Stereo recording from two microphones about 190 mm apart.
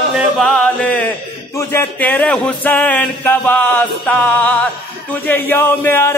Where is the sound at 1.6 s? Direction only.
15° left (ahead or behind).